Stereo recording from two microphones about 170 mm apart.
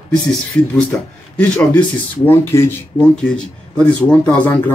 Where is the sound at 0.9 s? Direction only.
10° left (ahead or behind).